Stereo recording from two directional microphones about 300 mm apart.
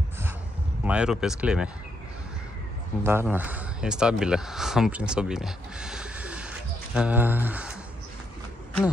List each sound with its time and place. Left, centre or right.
0.8 s speech: centre
3.0 s speech: centre